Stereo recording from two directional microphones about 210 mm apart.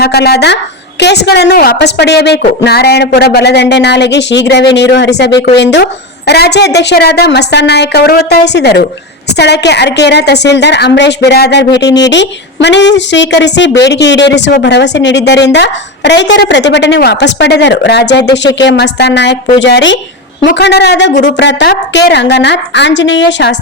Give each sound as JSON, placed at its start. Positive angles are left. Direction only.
{"t": 0.0, "sound": "a woman's voice", "side_deg": 50}